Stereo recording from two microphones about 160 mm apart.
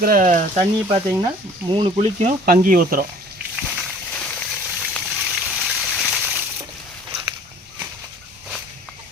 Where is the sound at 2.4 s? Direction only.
65° right (ahead or behind).